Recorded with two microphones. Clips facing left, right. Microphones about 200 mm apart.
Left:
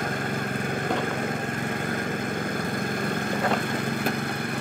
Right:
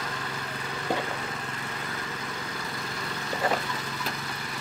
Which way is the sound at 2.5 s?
50° left (ahead or behind).